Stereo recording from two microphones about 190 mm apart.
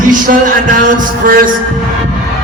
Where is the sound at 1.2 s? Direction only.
50° right (ahead or behind).